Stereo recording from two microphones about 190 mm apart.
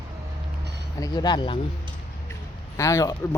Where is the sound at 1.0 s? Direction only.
20° left (ahead or behind).